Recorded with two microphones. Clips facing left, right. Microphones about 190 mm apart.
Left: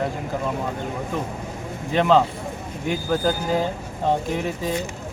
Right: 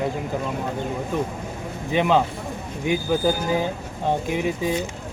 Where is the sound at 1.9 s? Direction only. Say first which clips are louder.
Left 2 dB; 15° right (ahead or behind).